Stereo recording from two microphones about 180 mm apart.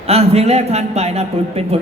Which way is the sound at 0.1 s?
35° right (ahead or behind).